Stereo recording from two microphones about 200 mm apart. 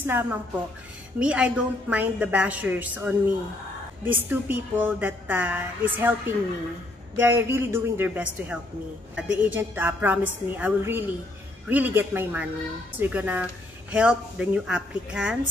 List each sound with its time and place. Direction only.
0.0 s a woman's voice: 10° right (ahead or behind)